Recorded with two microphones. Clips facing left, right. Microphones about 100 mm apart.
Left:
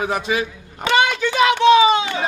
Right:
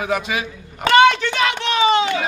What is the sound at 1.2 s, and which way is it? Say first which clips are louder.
Speech: left 7 dB; 15° left (ahead or behind).